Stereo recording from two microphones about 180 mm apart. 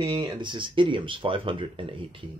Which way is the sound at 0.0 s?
25° right (ahead or behind).